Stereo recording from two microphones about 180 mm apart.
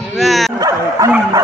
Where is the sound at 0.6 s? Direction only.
20° right (ahead or behind).